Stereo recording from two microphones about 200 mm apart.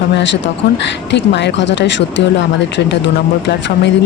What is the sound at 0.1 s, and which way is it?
A woman's voice, 65° left (ahead or behind).